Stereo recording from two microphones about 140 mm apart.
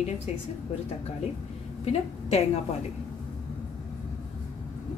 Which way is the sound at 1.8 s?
45° left (ahead or behind).